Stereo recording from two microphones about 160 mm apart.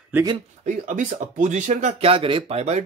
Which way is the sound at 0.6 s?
50° right (ahead or behind).